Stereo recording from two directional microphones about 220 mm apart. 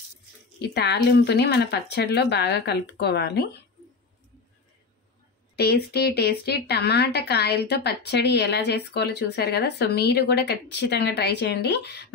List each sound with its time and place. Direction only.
0.6 s a woman's voice: 50° left (ahead or behind)
5.6 s a woman's voice: 45° left (ahead or behind)